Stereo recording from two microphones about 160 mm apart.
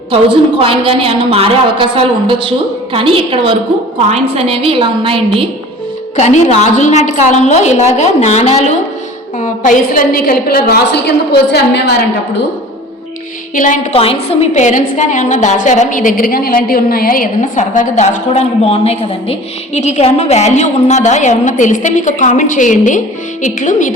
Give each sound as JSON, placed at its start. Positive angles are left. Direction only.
{"t": 0.1, "sound": "a woman's voice", "side_deg": -35}
{"t": 6.1, "sound": "a woman's voice", "side_deg": 45}
{"t": 9.4, "sound": "a woman's voice", "side_deg": 55}
{"t": 13.9, "sound": "a woman's voice", "side_deg": 35}